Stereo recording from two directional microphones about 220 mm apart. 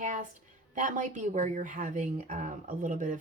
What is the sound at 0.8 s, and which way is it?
A woman's voice, 35° right (ahead or behind).